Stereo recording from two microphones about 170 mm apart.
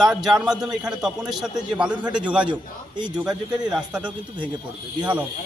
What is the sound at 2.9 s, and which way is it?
Speech, 25° right (ahead or behind).